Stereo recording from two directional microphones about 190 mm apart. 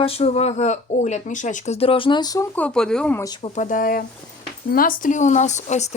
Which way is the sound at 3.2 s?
20° left (ahead or behind).